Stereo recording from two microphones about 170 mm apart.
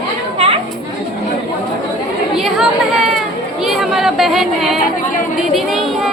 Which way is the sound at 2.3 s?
Centre (ahead or behind).